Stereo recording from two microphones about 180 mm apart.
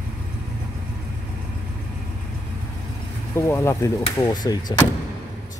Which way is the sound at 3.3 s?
15° left (ahead or behind).